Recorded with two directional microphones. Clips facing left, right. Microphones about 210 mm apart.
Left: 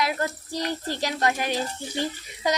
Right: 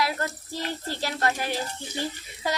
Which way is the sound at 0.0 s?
15° left (ahead or behind).